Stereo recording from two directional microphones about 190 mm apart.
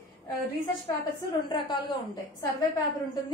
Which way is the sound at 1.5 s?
25° left (ahead or behind).